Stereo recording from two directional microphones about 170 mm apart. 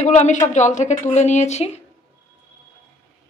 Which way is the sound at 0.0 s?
45° left (ahead or behind).